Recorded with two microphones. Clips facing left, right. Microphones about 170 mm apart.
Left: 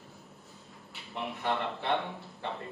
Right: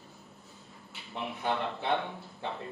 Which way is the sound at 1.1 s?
Centre (ahead or behind).